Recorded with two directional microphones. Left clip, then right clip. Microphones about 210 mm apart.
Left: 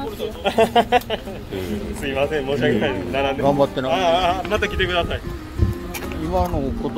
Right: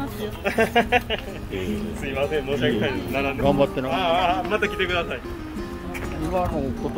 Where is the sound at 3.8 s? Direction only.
45° left (ahead or behind).